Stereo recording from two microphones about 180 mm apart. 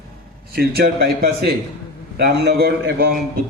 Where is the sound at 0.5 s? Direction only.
60° right (ahead or behind).